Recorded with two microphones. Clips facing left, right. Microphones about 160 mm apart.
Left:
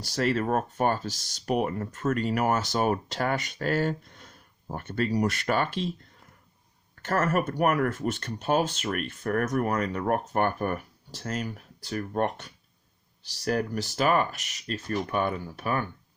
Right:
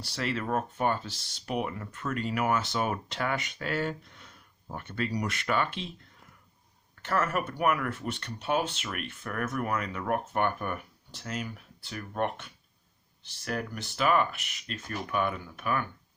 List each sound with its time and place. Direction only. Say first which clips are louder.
0.0 s speech: left 6 dB; 45° left (ahead or behind)
7.0 s speech: left 4 dB; 45° left (ahead or behind)